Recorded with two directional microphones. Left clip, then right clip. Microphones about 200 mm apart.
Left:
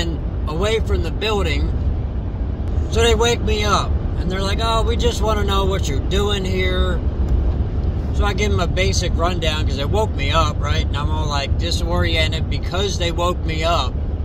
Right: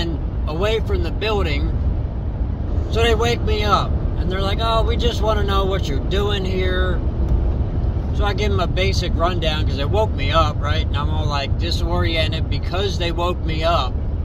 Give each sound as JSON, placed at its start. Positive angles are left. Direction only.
{"t": 0.0, "sound": "speech", "side_deg": 20}
{"t": 2.9, "sound": "speech", "side_deg": 20}
{"t": 8.2, "sound": "speech", "side_deg": 15}